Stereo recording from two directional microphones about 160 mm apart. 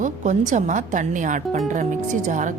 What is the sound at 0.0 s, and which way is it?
Speech, 50° right (ahead or behind).